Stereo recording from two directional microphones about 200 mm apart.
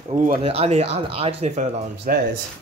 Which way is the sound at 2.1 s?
45° right (ahead or behind).